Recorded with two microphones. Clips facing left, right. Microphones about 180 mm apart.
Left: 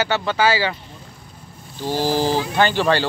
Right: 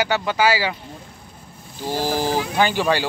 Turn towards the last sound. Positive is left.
turn(degrees=-10)  # may be behind; listen again after turning